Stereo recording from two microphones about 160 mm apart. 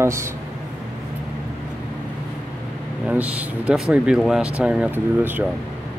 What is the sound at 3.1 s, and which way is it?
Speech, 10° right (ahead or behind).